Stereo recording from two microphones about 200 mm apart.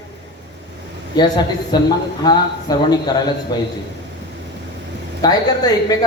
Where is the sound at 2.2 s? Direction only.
20° left (ahead or behind).